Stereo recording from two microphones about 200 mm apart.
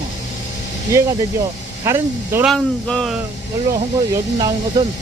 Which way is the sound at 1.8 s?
10° right (ahead or behind).